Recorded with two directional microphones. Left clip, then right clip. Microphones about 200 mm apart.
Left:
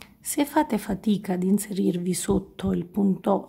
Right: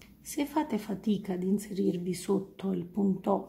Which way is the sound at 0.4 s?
40° left (ahead or behind).